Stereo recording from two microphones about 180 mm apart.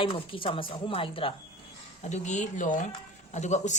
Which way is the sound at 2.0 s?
40° left (ahead or behind).